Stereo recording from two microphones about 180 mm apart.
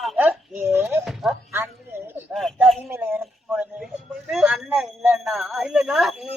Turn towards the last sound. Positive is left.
turn(degrees=0)  # may be behind; listen again after turning